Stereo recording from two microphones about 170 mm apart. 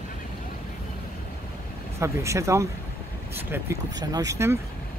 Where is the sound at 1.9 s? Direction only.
15° right (ahead or behind).